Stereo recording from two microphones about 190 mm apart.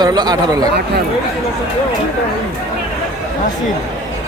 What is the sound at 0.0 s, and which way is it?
Speech, 20° right (ahead or behind).